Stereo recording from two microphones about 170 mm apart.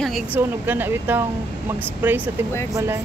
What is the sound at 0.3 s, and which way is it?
Speech, 10° right (ahead or behind).